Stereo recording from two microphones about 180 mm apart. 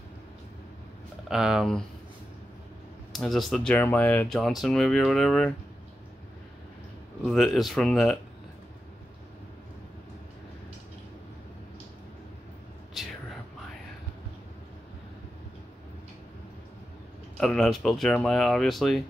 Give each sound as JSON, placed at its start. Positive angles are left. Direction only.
{"t": 1.3, "sound": "speech", "side_deg": -5}
{"t": 3.1, "sound": "speech", "side_deg": 0}
{"t": 7.2, "sound": "speech", "side_deg": 0}
{"t": 13.0, "sound": "whispering", "side_deg": 0}
{"t": 17.4, "sound": "speech", "side_deg": 0}